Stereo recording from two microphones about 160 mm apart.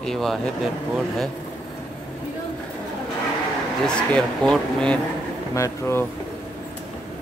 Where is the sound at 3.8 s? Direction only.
5° left (ahead or behind).